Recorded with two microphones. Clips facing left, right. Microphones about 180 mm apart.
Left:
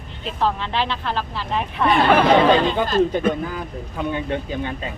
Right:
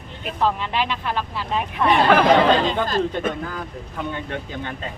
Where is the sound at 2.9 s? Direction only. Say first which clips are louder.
Left 4 dB; 15° left (ahead or behind).